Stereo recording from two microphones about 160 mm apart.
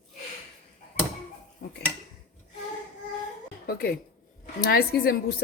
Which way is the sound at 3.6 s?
80° left.